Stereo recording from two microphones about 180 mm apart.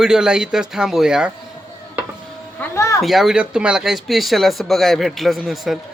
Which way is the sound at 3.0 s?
Centre (ahead or behind).